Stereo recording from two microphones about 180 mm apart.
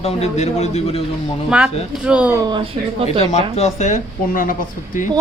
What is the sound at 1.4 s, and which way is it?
Speech, 5° right (ahead or behind).